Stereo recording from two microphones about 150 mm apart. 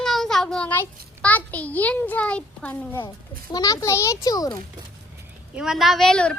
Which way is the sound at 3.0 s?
25° left (ahead or behind).